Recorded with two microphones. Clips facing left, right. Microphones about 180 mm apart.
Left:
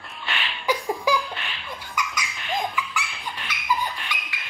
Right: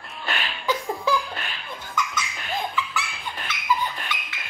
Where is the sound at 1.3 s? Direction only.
45° right (ahead or behind).